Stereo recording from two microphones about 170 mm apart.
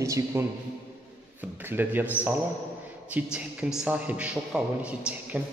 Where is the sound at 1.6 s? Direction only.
10° right (ahead or behind).